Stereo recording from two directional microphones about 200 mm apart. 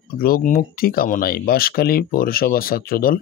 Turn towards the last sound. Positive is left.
turn(degrees=45)  # may be behind; listen again after turning